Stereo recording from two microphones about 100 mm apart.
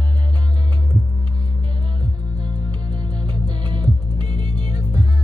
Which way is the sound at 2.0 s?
45° right (ahead or behind).